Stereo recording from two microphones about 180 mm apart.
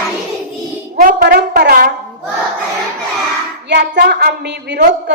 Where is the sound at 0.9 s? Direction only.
55° right (ahead or behind).